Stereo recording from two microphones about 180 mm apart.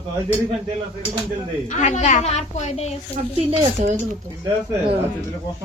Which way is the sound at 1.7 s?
40° left (ahead or behind).